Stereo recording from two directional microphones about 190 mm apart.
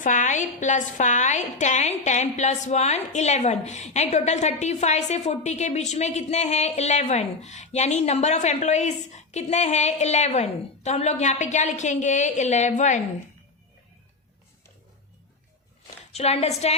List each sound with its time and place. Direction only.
0.0 s a woman's voice: 40° left (ahead or behind)
16.1 s a woman's voice: 35° left (ahead or behind)